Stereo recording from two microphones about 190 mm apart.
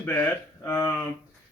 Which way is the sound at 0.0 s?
10° left (ahead or behind).